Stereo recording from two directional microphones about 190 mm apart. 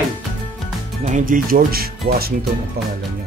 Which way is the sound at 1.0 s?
45° right (ahead or behind).